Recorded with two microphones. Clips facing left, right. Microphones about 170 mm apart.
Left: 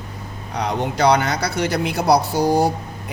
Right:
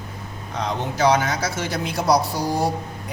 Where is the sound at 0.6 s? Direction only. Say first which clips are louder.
Left 2 dB; 70° left (ahead or behind).